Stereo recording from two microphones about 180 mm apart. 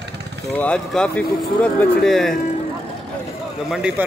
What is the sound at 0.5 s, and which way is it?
Speech, 5° left (ahead or behind).